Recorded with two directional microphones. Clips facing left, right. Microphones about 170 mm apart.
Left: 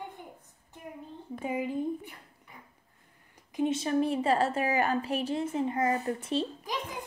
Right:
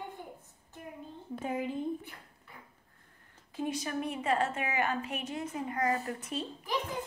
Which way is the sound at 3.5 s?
20° left (ahead or behind).